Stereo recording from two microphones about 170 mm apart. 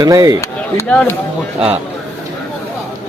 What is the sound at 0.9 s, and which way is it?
Speech, 5° left (ahead or behind).